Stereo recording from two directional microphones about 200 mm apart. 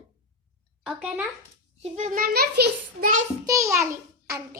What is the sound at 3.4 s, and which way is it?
Speech, 15° right (ahead or behind).